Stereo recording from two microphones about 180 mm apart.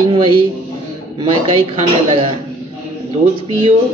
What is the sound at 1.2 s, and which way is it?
Speech, 30° right (ahead or behind).